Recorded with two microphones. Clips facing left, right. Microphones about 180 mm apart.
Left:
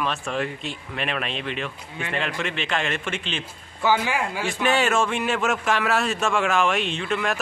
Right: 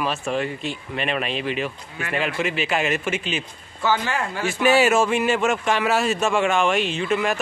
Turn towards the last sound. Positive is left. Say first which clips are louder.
# right 3 dB
turn(degrees=0)  # may be behind; listen again after turning